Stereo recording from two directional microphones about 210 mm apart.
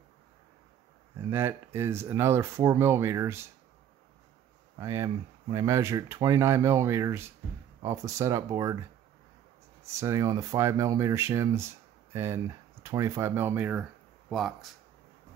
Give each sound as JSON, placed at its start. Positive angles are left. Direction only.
{"t": 1.3, "sound": "speech", "side_deg": -10}
{"t": 4.7, "sound": "speech", "side_deg": -15}
{"t": 9.8, "sound": "speech", "side_deg": -15}